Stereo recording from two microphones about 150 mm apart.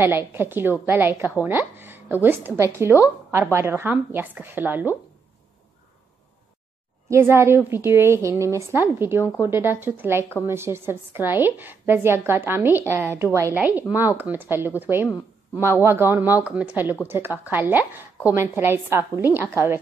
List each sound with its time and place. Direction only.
0.0 s a woman's voice: 15° right (ahead or behind)
7.1 s a woman's voice: 15° right (ahead or behind)